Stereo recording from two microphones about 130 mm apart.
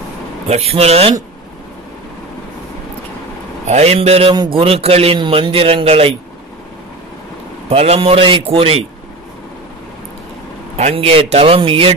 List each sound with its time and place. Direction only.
0.5 s a man's voice: 50° right (ahead or behind)
3.6 s a man's voice: 55° right (ahead or behind)
4.3 s a man's voice: 35° right (ahead or behind)
4.6 s a man's voice: 50° right (ahead or behind)
7.7 s a man's voice: 50° right (ahead or behind)
10.8 s a man's voice: 50° right (ahead or behind)